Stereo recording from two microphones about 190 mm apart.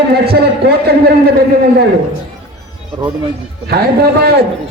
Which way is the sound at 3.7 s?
55° right (ahead or behind).